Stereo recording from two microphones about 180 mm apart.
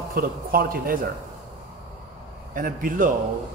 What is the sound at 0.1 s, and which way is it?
A man's voice, 55° right (ahead or behind).